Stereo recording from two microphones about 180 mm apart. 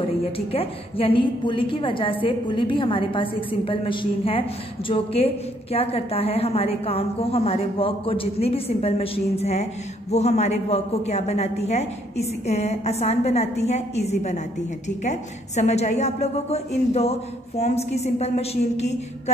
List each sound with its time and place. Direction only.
0.2 s a woman's voice: 30° left (ahead or behind)